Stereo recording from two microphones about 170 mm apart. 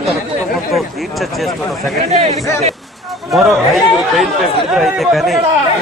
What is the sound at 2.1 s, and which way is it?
Speech, 40° right (ahead or behind).